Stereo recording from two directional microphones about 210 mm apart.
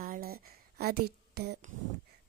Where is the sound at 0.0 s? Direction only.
45° right (ahead or behind).